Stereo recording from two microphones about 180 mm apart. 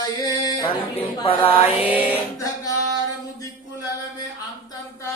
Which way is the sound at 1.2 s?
30° left (ahead or behind).